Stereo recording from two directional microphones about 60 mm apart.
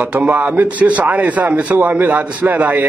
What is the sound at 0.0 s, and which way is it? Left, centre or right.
A man's voice, right.